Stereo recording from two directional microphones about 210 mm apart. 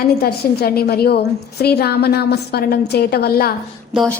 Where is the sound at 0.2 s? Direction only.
45° left (ahead or behind).